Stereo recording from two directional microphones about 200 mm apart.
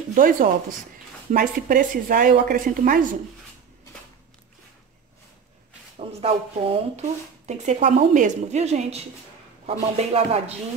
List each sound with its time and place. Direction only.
0.1 s a woman's voice: 45° right (ahead or behind)
5.9 s speech: 30° right (ahead or behind)